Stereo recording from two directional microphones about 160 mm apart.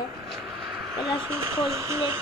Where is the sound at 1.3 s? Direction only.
20° right (ahead or behind).